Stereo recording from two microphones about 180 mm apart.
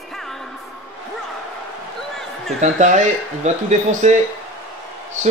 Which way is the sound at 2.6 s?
40° right (ahead or behind).